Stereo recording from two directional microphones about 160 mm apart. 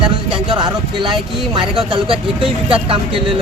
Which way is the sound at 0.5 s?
30° right (ahead or behind).